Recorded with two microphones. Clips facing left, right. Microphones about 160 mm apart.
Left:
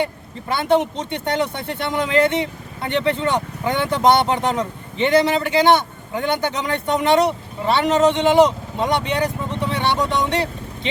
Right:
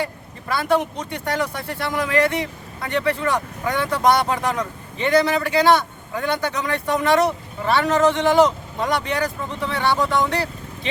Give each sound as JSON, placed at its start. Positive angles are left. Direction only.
{"t": 0.0, "sound": "speech", "side_deg": 25}